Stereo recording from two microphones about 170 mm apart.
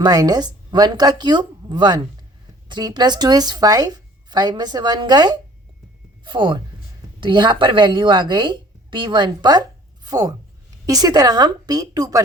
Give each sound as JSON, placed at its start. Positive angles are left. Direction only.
{"t": 0.0, "sound": "a woman's voice", "side_deg": -20}